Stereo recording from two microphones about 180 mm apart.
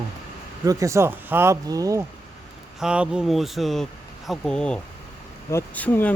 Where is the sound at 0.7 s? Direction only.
20° right (ahead or behind).